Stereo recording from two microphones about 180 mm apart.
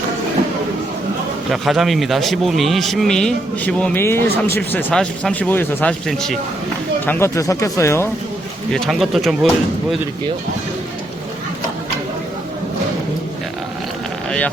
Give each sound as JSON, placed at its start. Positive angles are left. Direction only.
{"t": 1.5, "sound": "speech", "side_deg": 0}
{"t": 7.0, "sound": "speech", "side_deg": 10}
{"t": 8.7, "sound": "speech", "side_deg": 0}
{"t": 14.3, "sound": "vehicle", "side_deg": 5}